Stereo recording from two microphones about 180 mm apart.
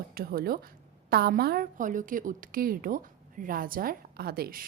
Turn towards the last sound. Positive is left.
turn(degrees=-55)  # may be behind; listen again after turning